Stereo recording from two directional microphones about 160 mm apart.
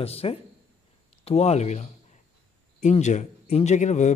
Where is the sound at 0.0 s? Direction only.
40° left (ahead or behind).